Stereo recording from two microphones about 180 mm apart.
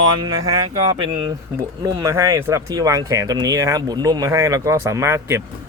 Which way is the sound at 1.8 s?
20° right (ahead or behind).